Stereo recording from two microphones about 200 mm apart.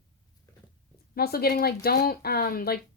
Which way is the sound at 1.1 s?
50° left (ahead or behind).